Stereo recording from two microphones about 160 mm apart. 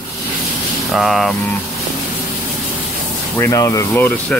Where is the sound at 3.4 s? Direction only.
20° left (ahead or behind).